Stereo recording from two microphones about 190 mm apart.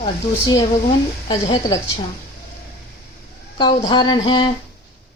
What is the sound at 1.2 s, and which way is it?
Speech, 20° left (ahead or behind).